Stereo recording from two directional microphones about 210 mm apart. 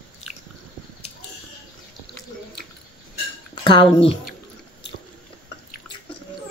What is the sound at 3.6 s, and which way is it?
Speech, 25° left (ahead or behind).